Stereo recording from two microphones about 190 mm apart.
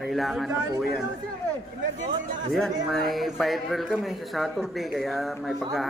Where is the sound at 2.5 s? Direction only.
Centre (ahead or behind).